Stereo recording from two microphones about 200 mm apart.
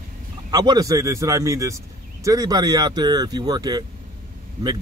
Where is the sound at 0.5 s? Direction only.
20° right (ahead or behind).